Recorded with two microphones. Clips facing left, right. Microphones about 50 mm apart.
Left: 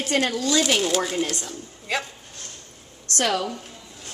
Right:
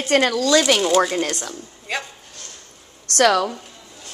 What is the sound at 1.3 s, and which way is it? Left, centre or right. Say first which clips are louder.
Speech: right 3 dB; right.